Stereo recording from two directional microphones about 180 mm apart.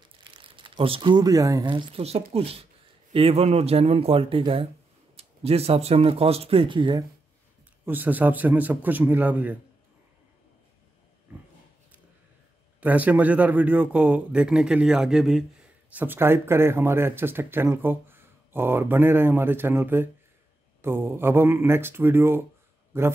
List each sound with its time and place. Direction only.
0.6 s speech: 30° right (ahead or behind)
7.8 s speech: 10° right (ahead or behind)
12.8 s speech: 10° right (ahead or behind)